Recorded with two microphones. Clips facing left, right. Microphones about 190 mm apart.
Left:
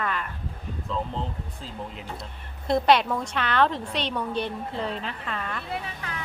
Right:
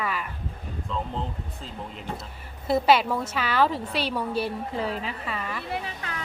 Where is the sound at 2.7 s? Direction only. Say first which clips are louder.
Even; 5° right (ahead or behind).